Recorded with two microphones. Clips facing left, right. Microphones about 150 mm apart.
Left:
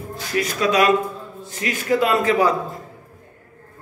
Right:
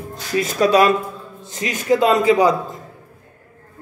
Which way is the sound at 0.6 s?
30° right (ahead or behind).